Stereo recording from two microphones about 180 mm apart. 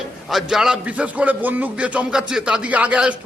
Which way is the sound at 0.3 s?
Centre (ahead or behind).